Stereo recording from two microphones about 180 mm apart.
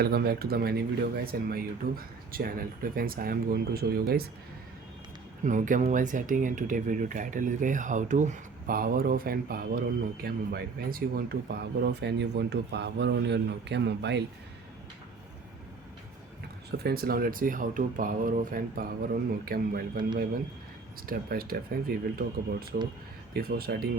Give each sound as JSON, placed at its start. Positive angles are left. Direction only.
{"t": 0.0, "sound": "speech", "side_deg": -60}
{"t": 5.4, "sound": "speech", "side_deg": -45}
{"t": 16.7, "sound": "speech", "side_deg": -60}
{"t": 21.1, "sound": "speech", "side_deg": -55}